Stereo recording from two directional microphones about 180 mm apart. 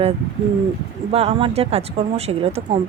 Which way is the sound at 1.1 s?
35° right (ahead or behind).